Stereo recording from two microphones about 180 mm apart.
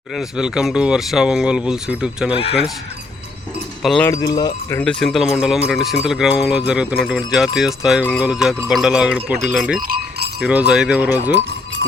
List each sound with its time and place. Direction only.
0.2 s speech: 5° right (ahead or behind)
2.3 s speech: 35° left (ahead or behind)
3.8 s speech: 5° left (ahead or behind)
4.1 s speech: 20° left (ahead or behind)
4.8 s speech: 5° left (ahead or behind)
9.8 s cowbell: 55° right (ahead or behind)
10.4 s speech: 5° right (ahead or behind)